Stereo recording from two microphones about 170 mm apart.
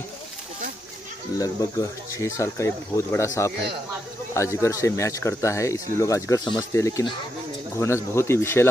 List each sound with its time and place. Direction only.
1.4 s speech: 20° left (ahead or behind)